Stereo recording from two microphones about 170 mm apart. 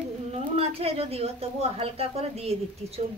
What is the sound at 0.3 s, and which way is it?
A woman's voice, 35° right (ahead or behind).